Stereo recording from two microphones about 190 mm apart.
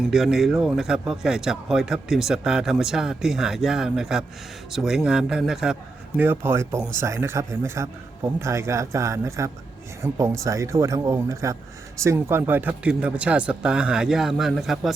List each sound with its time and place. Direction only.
0.1 s speech: centre (ahead or behind)